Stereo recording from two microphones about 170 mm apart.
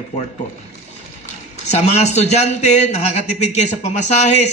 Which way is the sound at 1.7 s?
40° left (ahead or behind).